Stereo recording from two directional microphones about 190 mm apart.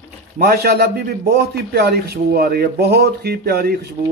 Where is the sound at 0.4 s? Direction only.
55° right (ahead or behind).